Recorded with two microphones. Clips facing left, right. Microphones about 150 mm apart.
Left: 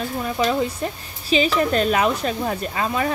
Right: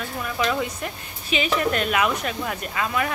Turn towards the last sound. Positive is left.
turn(degrees=30)  # may be behind; listen again after turning